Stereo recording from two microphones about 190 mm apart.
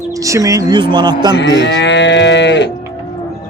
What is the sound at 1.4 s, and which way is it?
Moo, 65° left (ahead or behind).